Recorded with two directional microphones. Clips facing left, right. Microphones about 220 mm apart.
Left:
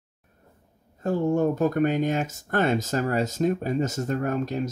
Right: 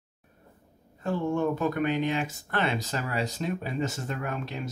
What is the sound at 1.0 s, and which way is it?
Speech, 40° left (ahead or behind).